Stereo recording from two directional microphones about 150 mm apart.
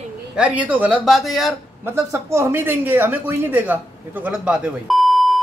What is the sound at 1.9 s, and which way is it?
Speech, 20° right (ahead or behind).